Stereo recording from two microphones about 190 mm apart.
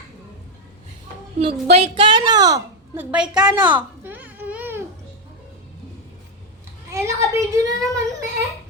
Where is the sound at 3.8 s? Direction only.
10° right (ahead or behind).